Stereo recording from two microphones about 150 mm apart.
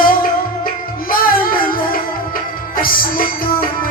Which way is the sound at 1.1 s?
75° left (ahead or behind).